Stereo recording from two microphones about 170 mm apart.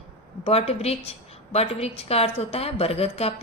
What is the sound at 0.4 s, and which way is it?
A woman's voice, 35° left (ahead or behind).